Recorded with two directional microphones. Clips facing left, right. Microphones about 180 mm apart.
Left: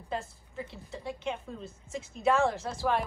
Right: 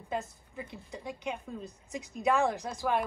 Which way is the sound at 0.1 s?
15° right (ahead or behind).